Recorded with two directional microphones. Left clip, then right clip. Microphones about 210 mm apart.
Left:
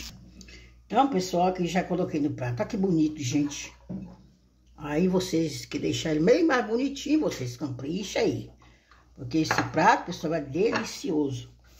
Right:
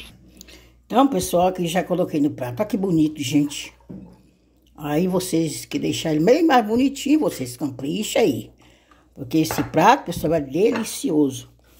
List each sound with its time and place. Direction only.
0.5 s speech: 40° right (ahead or behind)
4.7 s speech: 35° right (ahead or behind)
11.1 s speech: 50° right (ahead or behind)